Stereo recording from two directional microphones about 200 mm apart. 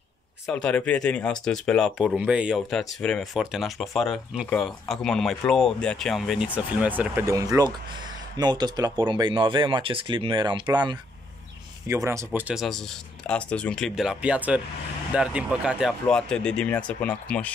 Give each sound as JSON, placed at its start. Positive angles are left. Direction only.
{"t": 0.5, "sound": "speech", "side_deg": 5}